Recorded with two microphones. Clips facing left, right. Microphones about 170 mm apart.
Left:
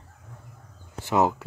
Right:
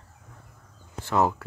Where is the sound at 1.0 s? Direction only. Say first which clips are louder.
Left 1 dB; 20° left (ahead or behind).